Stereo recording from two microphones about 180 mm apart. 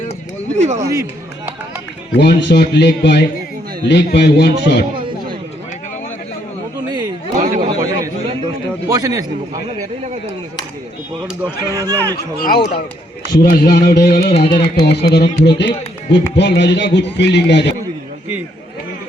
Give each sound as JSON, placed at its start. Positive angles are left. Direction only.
{"t": 0.5, "sound": "speech", "side_deg": -40}
{"t": 0.8, "sound": "speech", "side_deg": -15}
{"t": 2.1, "sound": "a man's voice", "side_deg": 65}
{"t": 7.6, "sound": "a sound", "side_deg": -20}
{"t": 8.9, "sound": "a man's voice", "side_deg": -20}
{"t": 11.2, "sound": "speech", "side_deg": -20}
{"t": 12.1, "sound": "speech", "side_deg": 60}
{"t": 14.3, "sound": "carnatic music", "side_deg": 35}
{"t": 14.8, "sound": "a man's voice", "side_deg": 60}